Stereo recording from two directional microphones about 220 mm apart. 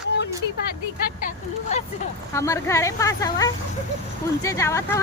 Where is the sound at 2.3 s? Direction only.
15° left (ahead or behind).